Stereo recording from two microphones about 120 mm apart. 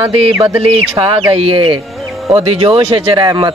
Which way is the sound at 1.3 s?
50° right (ahead or behind).